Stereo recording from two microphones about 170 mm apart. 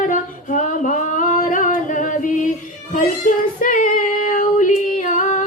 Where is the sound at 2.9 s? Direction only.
50° left (ahead or behind).